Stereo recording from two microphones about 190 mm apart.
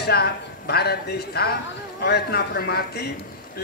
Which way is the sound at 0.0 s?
55° left (ahead or behind).